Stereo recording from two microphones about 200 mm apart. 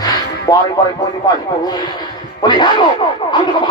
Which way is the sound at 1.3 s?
20° left (ahead or behind).